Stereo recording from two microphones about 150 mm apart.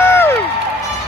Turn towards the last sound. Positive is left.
turn(degrees=15)  # may be behind; listen again after turning